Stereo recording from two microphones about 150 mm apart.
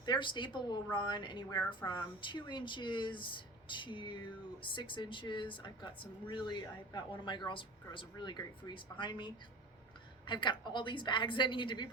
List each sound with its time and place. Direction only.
0.0 s a woman's voice: 30° left (ahead or behind)